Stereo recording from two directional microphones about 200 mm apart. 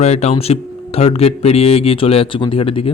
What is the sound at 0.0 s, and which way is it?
Speech, 35° left (ahead or behind).